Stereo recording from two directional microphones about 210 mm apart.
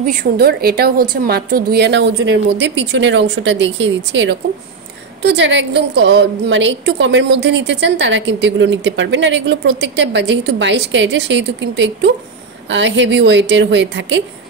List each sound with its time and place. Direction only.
0.0 s a woman's voice: 40° right (ahead or behind); by 14.2 s 60° right (ahead or behind)